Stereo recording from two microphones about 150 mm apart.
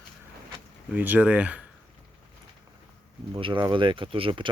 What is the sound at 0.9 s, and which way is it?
Speech, 10° right (ahead or behind).